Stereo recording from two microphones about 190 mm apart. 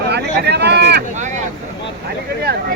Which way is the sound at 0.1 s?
60° right (ahead or behind).